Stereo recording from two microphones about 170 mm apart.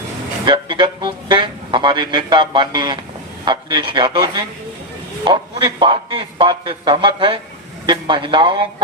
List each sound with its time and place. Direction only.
0.4 s speech: 25° right (ahead or behind)